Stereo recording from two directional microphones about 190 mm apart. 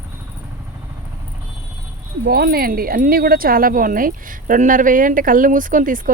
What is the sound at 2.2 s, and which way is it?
Speech, 55° right (ahead or behind).